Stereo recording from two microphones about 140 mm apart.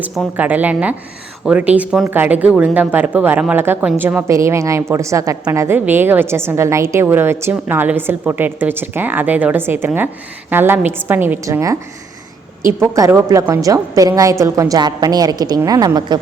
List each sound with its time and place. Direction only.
0.3 s speech: 10° right (ahead or behind)
12.8 s a woman's voice: 20° right (ahead or behind)